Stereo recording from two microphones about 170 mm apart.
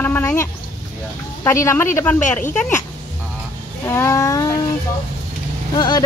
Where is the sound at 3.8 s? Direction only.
15° left (ahead or behind).